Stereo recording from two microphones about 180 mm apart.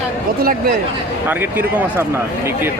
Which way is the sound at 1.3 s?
10° right (ahead or behind).